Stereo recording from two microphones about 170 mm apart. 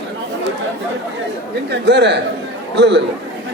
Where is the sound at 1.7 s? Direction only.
80° right.